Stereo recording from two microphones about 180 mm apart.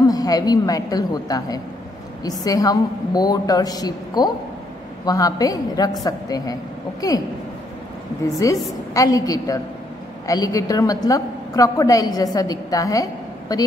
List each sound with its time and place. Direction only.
0.0 s a woman's voice: 20° left (ahead or behind)
8.4 s a woman's voice: 20° left (ahead or behind)